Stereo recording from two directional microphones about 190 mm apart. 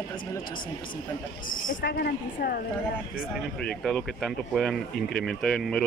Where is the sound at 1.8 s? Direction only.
60° left (ahead or behind).